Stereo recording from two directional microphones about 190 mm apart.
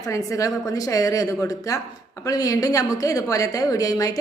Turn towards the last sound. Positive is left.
turn(degrees=20)  # may be behind; listen again after turning